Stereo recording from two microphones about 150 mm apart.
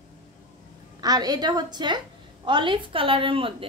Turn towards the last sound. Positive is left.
turn(degrees=-35)  # may be behind; listen again after turning